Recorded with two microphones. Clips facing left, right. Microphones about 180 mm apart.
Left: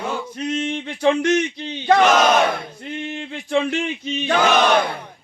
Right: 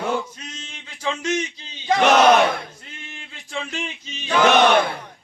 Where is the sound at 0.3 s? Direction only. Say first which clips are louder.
Left 17 dB; 60° left (ahead or behind).